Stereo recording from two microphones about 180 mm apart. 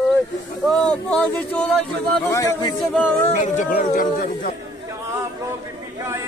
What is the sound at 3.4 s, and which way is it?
Speech, 45° left (ahead or behind).